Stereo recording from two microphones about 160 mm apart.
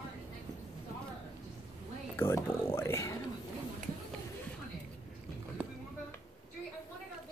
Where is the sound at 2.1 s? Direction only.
15° left (ahead or behind).